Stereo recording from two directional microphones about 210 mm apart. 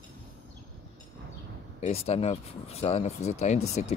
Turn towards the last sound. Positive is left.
turn(degrees=30)  # may be behind; listen again after turning